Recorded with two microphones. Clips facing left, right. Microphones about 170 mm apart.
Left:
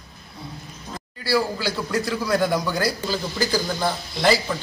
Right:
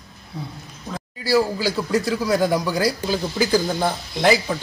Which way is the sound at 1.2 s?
45° right (ahead or behind).